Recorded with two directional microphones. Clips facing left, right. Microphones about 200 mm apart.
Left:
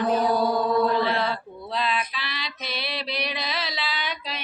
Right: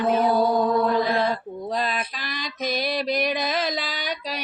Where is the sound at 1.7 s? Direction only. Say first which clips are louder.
Left 1 dB; 45° right (ahead or behind).